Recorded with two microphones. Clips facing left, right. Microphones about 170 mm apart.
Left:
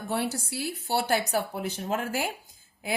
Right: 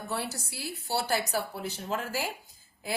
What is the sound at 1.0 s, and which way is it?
Speech, 55° left (ahead or behind).